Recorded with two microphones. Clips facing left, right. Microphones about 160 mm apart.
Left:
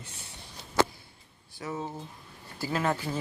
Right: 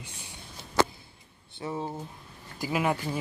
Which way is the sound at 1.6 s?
30° right (ahead or behind).